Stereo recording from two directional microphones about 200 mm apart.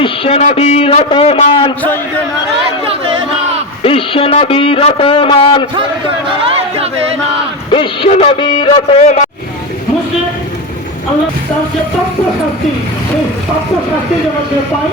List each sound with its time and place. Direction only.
0.0 s a man's voice: 30° left (ahead or behind)
3.8 s a man's voice: 25° left (ahead or behind)
6.7 s music: 30° right (ahead or behind)
7.7 s a man's voice: 25° left (ahead or behind)